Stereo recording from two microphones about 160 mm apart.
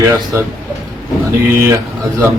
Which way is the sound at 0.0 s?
15° right (ahead or behind).